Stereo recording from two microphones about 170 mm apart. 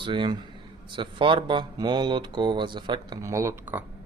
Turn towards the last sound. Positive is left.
turn(degrees=-15)  # may be behind; listen again after turning